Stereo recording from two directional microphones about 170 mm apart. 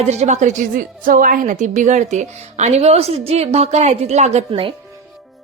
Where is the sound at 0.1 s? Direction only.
40° right (ahead or behind).